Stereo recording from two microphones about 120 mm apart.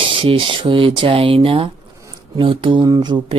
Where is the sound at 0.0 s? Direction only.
45° right (ahead or behind).